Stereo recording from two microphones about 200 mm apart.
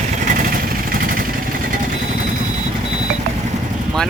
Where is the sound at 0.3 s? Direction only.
40° right (ahead or behind).